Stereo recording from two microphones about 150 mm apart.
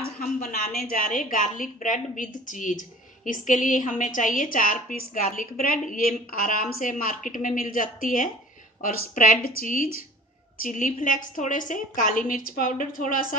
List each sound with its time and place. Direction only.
0.0 s a woman's voice: 80° left